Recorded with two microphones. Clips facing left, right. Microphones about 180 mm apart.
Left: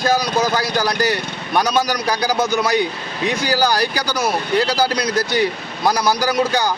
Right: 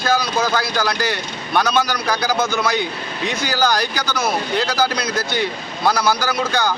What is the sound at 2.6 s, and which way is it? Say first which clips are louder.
Speech: left 2 dB; 35° left (ahead or behind).